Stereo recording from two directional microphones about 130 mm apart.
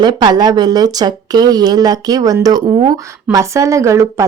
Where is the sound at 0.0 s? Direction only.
35° right (ahead or behind).